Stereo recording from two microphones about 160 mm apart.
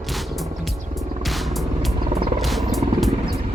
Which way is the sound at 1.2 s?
Centre (ahead or behind).